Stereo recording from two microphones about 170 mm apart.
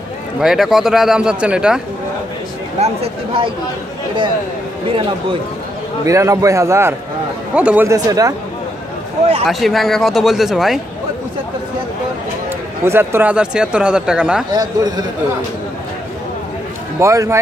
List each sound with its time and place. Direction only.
0.4 s speech: 5° right (ahead or behind)
2.8 s speech: 35° right (ahead or behind)
6.0 s a man's voice: 20° right (ahead or behind)
9.5 s speech: centre (ahead or behind)
12.8 s speech: 15° right (ahead or behind)
14.5 s a man's voice: 25° right (ahead or behind)
17.0 s a man's voice: 15° right (ahead or behind)